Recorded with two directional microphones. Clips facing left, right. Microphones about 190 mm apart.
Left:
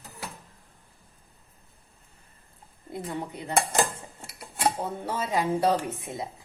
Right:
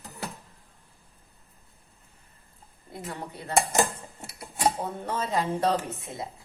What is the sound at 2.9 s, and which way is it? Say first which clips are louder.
Speech: left 4 dB; 15° left (ahead or behind).